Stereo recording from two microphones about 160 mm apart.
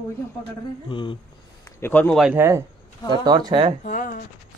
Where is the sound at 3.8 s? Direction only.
55° left (ahead or behind).